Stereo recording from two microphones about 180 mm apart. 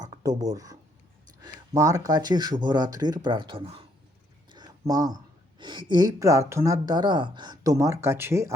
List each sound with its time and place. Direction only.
0.2 s speech: 20° right (ahead or behind)